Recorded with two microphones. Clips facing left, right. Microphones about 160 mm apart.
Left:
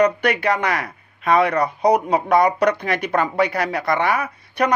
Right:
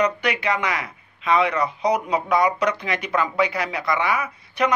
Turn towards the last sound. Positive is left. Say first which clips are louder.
# left 2 dB
turn(degrees=60)  # may be behind; listen again after turning